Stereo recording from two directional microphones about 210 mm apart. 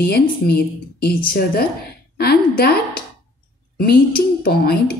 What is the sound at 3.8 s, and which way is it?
Speech, 45° left (ahead or behind).